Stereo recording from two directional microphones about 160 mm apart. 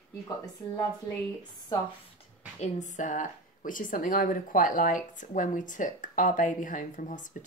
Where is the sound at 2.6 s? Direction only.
50° left (ahead or behind).